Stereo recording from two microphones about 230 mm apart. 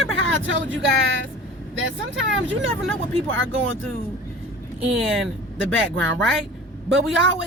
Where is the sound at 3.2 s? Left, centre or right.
Right.